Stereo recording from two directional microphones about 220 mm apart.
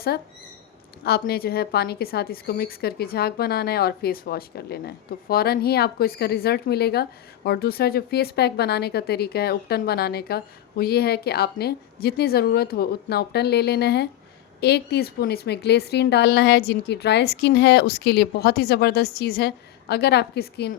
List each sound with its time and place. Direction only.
1.0 s a woman's voice: 45° left (ahead or behind)